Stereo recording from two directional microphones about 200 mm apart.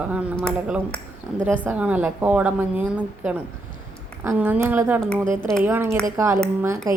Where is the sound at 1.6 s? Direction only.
5° right (ahead or behind).